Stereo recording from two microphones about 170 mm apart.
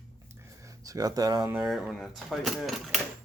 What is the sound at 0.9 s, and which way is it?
Speech, 20° right (ahead or behind).